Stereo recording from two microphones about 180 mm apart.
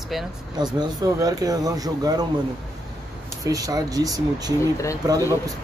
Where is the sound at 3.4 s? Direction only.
20° right (ahead or behind).